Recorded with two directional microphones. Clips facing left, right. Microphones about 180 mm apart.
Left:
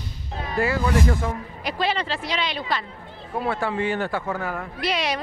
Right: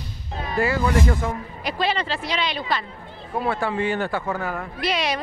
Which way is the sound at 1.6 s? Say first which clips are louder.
Right 1 dB; 20° right (ahead or behind).